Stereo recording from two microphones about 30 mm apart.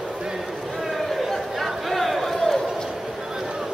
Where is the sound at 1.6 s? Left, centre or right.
Centre.